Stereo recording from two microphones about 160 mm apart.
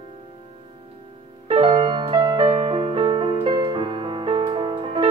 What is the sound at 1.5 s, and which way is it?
Music, 35° right (ahead or behind).